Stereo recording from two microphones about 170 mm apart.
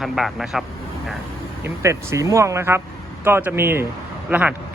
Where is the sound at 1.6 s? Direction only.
15° right (ahead or behind).